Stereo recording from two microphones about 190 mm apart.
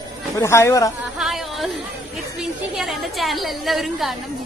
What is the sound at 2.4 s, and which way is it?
A woman's voice, centre (ahead or behind).